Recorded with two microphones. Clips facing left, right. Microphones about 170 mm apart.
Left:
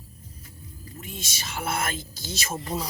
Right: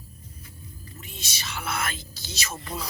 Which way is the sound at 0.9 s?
50° left (ahead or behind).